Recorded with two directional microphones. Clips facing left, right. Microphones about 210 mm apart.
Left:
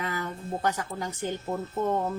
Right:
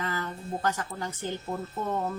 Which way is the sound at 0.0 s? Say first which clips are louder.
Left 1 dB; 10° left (ahead or behind).